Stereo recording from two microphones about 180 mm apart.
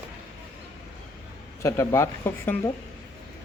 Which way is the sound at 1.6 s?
15° left (ahead or behind).